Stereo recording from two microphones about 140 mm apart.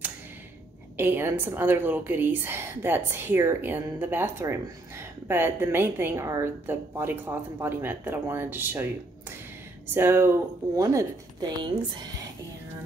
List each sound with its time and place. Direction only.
0.9 s a woman's voice: 15° right (ahead or behind)
9.9 s speech: 15° right (ahead or behind)